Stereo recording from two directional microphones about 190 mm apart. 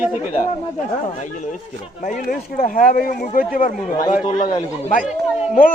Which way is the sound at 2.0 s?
45° left (ahead or behind).